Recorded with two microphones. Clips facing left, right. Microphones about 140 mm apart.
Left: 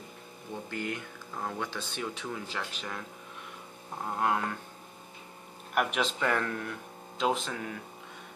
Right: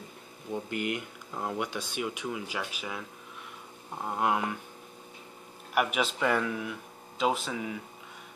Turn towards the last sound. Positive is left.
turn(degrees=-5)  # may be behind; listen again after turning